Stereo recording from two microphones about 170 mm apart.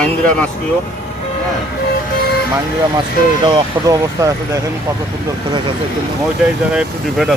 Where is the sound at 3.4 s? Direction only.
25° right (ahead or behind).